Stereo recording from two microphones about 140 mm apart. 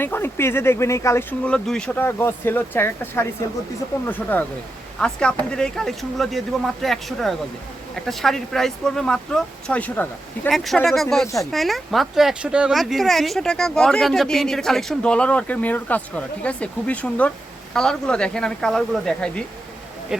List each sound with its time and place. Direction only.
0.0 s speech: 15° left (ahead or behind)
1.5 s speech: 5° left (ahead or behind)
2.0 s speech: 15° left (ahead or behind)
10.5 s speech: centre (ahead or behind)